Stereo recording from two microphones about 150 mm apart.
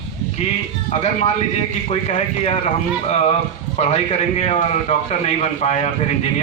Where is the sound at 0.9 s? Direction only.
50° left (ahead or behind).